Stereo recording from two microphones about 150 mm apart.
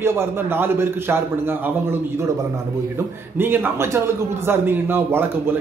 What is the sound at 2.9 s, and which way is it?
A man's voice, 15° right (ahead or behind).